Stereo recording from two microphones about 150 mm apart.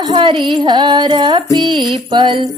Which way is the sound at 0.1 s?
35° right (ahead or behind).